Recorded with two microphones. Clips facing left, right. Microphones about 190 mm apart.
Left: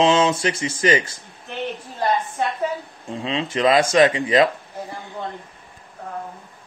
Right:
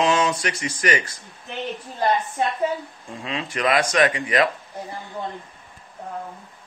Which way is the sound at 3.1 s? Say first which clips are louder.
Left 5 dB; 25° left (ahead or behind).